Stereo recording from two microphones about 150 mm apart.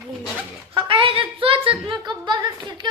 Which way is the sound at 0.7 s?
35° right (ahead or behind).